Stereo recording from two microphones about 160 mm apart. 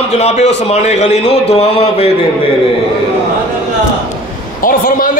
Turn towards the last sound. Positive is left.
turn(degrees=60)  # may be behind; listen again after turning